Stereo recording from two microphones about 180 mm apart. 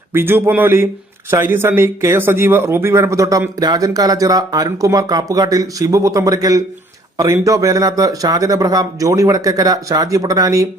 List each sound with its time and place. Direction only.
0.1 s a man's voice: 10° right (ahead or behind)